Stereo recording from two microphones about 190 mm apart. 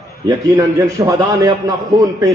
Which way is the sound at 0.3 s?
20° right (ahead or behind).